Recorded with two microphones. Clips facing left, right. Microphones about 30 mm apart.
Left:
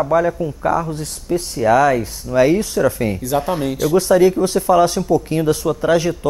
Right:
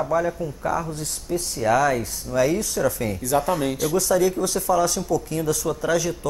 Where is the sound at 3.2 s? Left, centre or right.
Centre.